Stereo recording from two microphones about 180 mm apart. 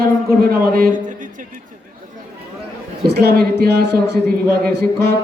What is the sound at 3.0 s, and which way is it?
A man's voice, 65° right (ahead or behind).